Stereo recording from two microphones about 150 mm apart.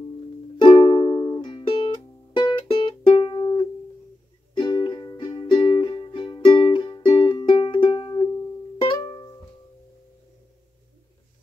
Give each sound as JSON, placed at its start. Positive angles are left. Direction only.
{"t": 0.6, "sound": "music", "side_deg": 35}